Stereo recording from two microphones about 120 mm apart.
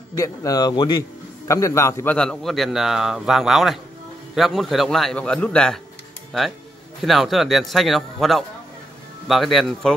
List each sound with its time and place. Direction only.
0.1 s a man's voice: 30° left (ahead or behind)
2.1 s a man's voice: 5° left (ahead or behind)
7.0 s a man's voice: centre (ahead or behind)